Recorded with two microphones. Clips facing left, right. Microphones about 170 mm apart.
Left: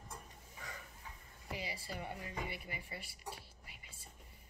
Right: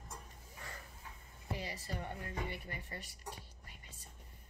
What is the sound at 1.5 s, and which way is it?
A woman's voice, 10° left (ahead or behind).